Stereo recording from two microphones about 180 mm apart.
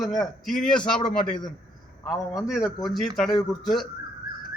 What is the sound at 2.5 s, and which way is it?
Speech, centre (ahead or behind).